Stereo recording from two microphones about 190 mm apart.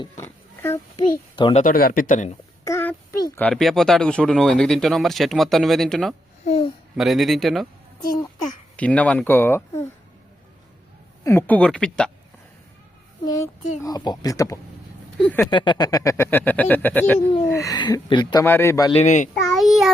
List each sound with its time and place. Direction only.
0.2 s oink: 10° left (ahead or behind)
1.5 s speech: 50° left (ahead or behind)
2.6 s a sound: 15° left (ahead or behind)
3.3 s speech: 5° left (ahead or behind)
6.4 s babbling: 30° left (ahead or behind)
6.9 s speech: centre (ahead or behind)
8.7 s speech: 5° left (ahead or behind)
11.2 s speech: 15° left (ahead or behind)
13.2 s a child's voice: 20° left (ahead or behind)
15.4 s a child's voice: 25° left (ahead or behind)
18.4 s speech: 15° left (ahead or behind)
18.9 s a child's voice: 40° left (ahead or behind)
19.3 s child singing: centre (ahead or behind)